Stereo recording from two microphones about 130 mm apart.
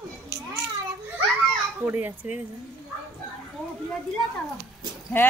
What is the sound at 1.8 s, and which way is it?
Speech, 15° right (ahead or behind).